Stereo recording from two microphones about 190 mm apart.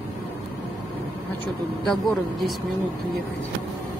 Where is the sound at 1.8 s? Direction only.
Centre (ahead or behind).